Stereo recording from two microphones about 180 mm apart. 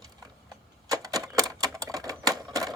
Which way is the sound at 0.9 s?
20° right (ahead or behind).